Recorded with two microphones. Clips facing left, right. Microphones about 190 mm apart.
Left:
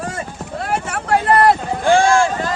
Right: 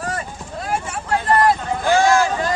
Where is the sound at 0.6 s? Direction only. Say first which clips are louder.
Left 2 dB; 70° left (ahead or behind).